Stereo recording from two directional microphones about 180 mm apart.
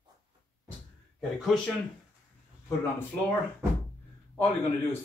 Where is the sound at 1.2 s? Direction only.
Centre (ahead or behind).